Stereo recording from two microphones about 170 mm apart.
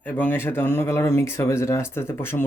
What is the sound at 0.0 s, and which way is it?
Speech, 10° left (ahead or behind).